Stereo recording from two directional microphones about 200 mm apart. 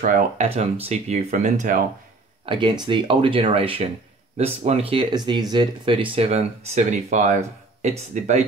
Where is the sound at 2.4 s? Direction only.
25° right (ahead or behind).